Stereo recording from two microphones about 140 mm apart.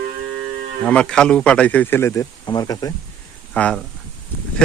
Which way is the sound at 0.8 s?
5° left (ahead or behind).